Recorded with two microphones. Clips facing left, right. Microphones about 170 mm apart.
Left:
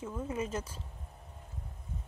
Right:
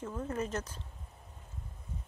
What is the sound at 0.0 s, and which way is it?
Speech, 10° left (ahead or behind).